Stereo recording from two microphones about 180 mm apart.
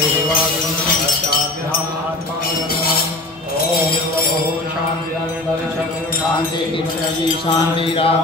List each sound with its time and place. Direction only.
7.4 s mantra: 30° left (ahead or behind)